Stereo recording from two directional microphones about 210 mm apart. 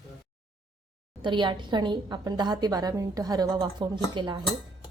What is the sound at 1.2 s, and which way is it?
A woman's voice, 20° right (ahead or behind).